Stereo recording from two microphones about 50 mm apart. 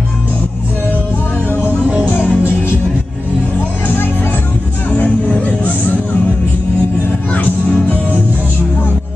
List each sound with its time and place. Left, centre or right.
2.0 s music: left
7.3 s music: left